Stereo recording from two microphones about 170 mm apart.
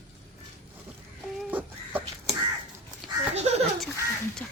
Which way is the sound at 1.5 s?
10° right (ahead or behind).